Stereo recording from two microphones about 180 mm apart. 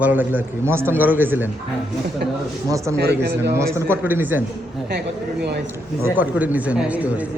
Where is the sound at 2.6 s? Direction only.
20° right (ahead or behind).